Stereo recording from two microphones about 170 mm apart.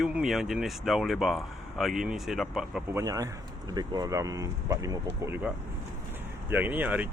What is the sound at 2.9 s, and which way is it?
Speech, 20° right (ahead or behind).